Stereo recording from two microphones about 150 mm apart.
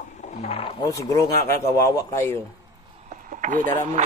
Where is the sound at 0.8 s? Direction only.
20° left (ahead or behind).